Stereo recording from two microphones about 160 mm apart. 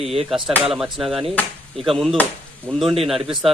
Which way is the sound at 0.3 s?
5° right (ahead or behind).